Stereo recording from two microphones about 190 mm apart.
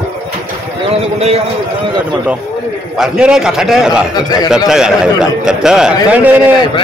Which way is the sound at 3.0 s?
5° right (ahead or behind).